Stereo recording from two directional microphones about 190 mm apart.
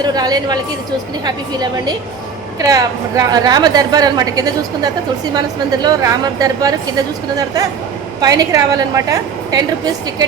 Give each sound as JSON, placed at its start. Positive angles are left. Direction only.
{"t": 0.0, "sound": "a woman's voice", "side_deg": -20}